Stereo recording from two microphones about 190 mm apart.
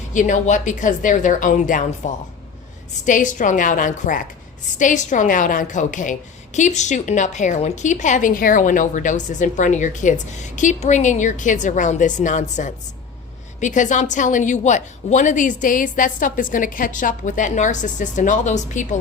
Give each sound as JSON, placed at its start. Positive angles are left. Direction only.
{"t": 0.1, "sound": "a woman's voice", "side_deg": 40}